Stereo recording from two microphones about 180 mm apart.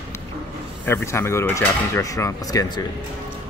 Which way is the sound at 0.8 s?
15° left (ahead or behind).